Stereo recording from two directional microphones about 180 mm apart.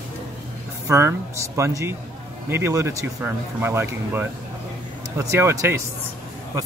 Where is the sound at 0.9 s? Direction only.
15° right (ahead or behind).